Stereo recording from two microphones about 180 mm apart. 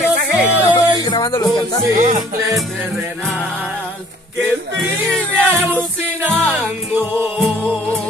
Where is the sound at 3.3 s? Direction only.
10° left (ahead or behind).